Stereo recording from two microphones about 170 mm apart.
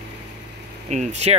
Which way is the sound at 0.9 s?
40° right (ahead or behind).